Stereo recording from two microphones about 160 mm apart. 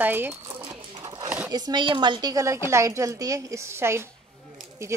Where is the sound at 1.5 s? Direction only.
25° right (ahead or behind).